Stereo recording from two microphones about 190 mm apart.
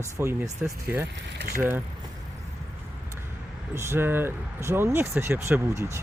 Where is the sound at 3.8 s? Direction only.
10° right (ahead or behind).